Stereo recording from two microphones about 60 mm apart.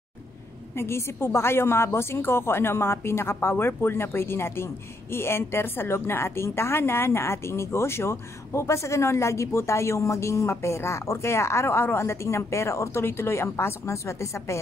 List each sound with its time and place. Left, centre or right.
0.7 s a woman's voice: left